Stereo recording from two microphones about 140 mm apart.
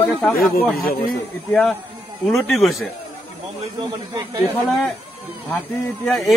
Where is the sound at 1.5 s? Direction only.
5° left (ahead or behind).